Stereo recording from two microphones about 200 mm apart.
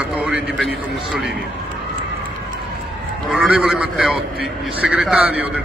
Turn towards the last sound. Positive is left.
turn(degrees=-5)  # may be behind; listen again after turning